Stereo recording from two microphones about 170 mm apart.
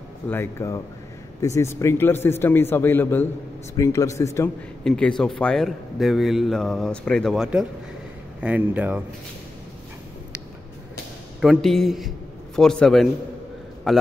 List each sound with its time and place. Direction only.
0.3 s a man's voice: 15° left (ahead or behind)
4.8 s a man's voice: 5° left (ahead or behind)
11.4 s a man's voice: centre (ahead or behind)